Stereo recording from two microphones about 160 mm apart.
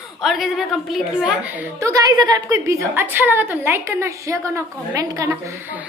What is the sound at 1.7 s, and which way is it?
A woman's voice, 20° right (ahead or behind).